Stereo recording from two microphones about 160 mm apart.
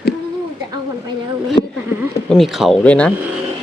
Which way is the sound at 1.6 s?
30° left (ahead or behind).